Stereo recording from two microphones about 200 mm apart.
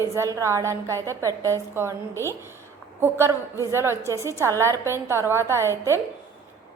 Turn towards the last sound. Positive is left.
turn(degrees=-15)  # may be behind; listen again after turning